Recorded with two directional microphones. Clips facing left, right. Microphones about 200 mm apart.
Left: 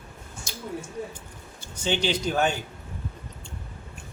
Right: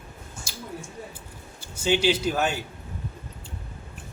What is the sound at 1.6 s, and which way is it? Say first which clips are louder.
Speech: right 4 dB; 5° right (ahead or behind).